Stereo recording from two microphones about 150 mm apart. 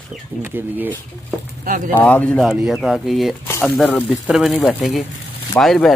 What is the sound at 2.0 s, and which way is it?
Speech, 10° left (ahead or behind).